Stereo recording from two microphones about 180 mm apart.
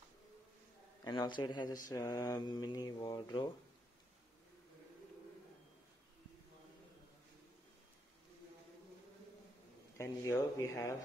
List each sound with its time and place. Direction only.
1.0 s speech: 25° left (ahead or behind)
9.9 s speech: 15° left (ahead or behind)